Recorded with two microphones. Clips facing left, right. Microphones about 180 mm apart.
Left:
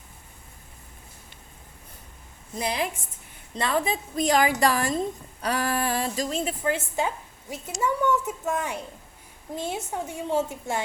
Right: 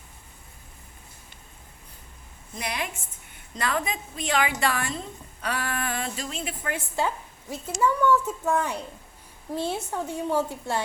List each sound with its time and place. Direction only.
2.6 s a woman's voice: 30° left (ahead or behind)
6.7 s a woman's voice: 20° left (ahead or behind)